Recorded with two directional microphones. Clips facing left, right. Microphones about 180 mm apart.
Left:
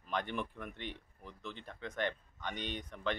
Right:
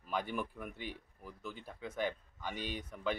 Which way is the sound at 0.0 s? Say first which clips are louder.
Even; 5° right (ahead or behind).